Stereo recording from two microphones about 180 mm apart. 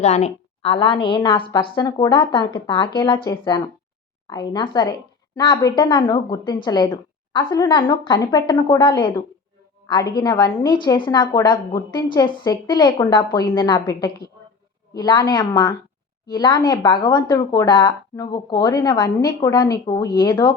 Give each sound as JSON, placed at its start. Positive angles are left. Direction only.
{"t": 0.0, "sound": "a woman's voice", "side_deg": 40}